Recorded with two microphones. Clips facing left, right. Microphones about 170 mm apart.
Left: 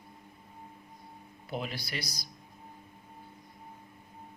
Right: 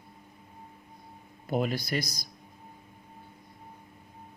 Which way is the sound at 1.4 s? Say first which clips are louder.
Right 8 dB; 45° right (ahead or behind).